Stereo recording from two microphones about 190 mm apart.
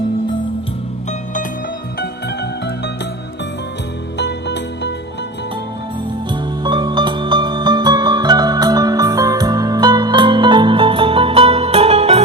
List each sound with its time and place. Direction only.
2.0 s music: 60° left (ahead or behind)
4.2 s music: 65° left (ahead or behind)
6.3 s music: 25° right (ahead or behind)